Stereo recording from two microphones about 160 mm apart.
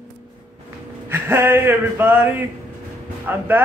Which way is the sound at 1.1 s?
15° right (ahead or behind).